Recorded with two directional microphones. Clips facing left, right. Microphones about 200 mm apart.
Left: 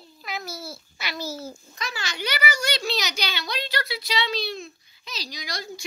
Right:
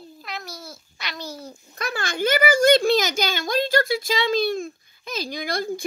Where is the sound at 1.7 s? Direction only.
55° right (ahead or behind).